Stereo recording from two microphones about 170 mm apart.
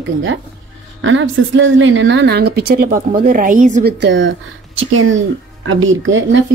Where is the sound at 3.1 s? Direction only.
55° right (ahead or behind).